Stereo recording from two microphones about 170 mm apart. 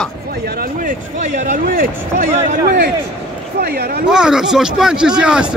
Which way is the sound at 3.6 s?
65° right (ahead or behind).